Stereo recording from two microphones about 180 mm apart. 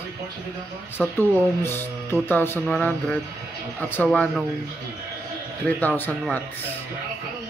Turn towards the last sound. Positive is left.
turn(degrees=10)  # may be behind; listen again after turning